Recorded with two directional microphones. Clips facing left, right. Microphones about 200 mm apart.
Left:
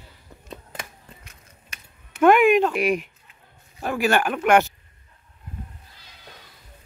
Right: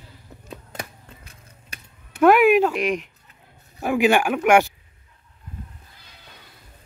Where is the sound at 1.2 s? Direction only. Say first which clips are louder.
Right 2 dB; 35° right (ahead or behind).